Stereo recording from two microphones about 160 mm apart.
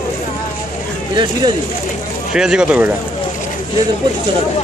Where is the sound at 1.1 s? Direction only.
30° right (ahead or behind).